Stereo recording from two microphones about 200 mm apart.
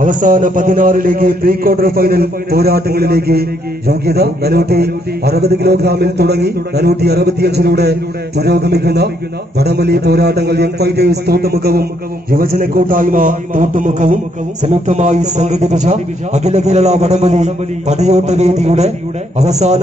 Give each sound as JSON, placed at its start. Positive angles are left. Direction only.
{"t": 0.0, "sound": "a man's voice", "side_deg": -40}